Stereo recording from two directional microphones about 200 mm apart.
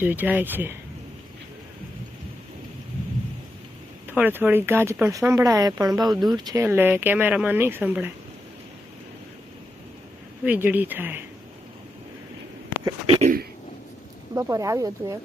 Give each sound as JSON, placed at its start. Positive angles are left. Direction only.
{"t": 0.0, "sound": "speech", "side_deg": -10}
{"t": 4.0, "sound": "speech", "side_deg": -10}
{"t": 10.4, "sound": "speech", "side_deg": -10}
{"t": 12.8, "sound": "a sound", "side_deg": -30}
{"t": 14.3, "sound": "speech", "side_deg": -15}